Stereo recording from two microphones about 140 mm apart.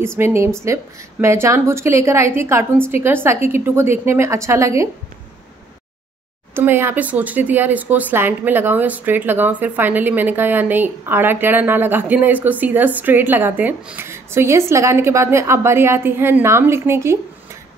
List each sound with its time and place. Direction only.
0.0 s a woman's voice: 20° right (ahead or behind)
6.5 s speech: 15° right (ahead or behind)